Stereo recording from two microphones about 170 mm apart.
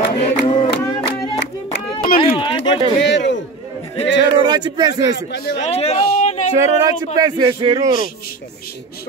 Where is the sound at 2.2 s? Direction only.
30° left (ahead or behind).